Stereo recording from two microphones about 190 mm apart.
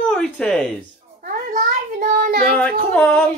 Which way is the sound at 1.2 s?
40° right (ahead or behind).